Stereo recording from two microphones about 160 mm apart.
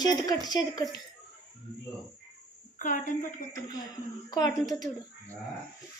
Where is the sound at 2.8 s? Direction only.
55° left (ahead or behind).